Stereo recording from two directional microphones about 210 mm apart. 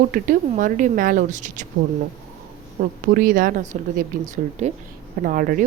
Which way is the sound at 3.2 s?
40° right (ahead or behind).